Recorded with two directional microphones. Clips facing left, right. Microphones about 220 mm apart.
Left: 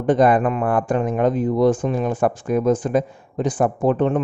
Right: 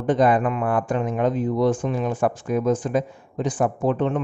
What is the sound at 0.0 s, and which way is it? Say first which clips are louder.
Speech: left 3 dB; 50° left (ahead or behind).